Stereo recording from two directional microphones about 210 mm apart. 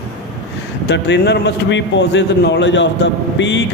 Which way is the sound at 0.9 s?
55° left (ahead or behind).